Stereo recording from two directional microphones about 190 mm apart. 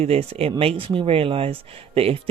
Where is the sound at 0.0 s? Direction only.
35° right (ahead or behind).